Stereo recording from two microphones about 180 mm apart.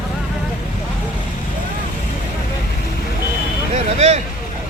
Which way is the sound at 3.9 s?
40° right (ahead or behind).